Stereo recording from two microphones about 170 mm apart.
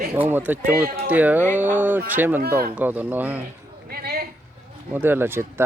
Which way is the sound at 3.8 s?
65° right (ahead or behind).